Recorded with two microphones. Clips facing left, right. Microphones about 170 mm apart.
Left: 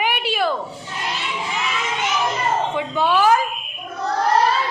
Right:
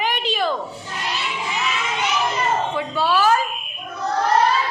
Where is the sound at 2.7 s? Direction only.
15° left (ahead or behind).